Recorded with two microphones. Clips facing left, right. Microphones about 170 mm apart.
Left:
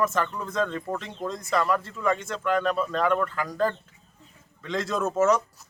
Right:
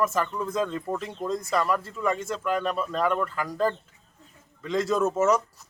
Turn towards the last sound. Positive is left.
turn(degrees=-5)  # may be behind; listen again after turning